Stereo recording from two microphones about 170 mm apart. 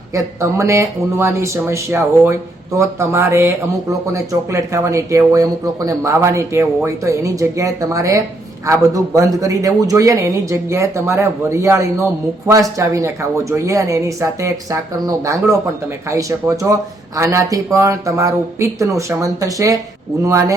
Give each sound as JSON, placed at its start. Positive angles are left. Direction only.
{"t": 0.1, "sound": "speech", "side_deg": -20}